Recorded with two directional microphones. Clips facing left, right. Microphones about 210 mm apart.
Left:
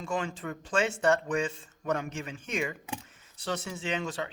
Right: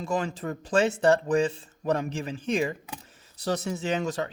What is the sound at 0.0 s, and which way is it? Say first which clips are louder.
Speech: right 4 dB; 35° right (ahead or behind).